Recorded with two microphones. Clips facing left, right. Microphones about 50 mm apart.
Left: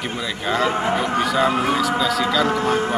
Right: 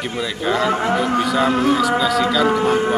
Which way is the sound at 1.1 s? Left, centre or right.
Centre.